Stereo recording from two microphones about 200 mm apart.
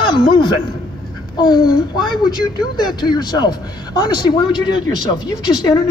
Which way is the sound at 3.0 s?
20° left (ahead or behind).